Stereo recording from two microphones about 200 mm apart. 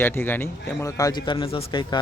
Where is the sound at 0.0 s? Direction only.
10° left (ahead or behind).